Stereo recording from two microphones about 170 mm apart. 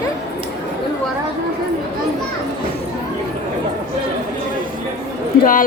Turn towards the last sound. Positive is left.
turn(degrees=55)  # may be behind; listen again after turning